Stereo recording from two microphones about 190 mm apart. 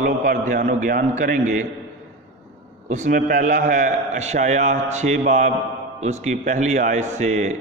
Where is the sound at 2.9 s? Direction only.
45° right (ahead or behind).